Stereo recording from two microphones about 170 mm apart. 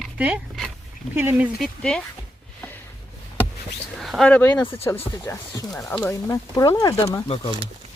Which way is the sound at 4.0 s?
Centre (ahead or behind).